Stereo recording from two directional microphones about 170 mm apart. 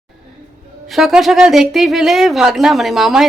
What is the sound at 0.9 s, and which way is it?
A woman's voice, centre (ahead or behind).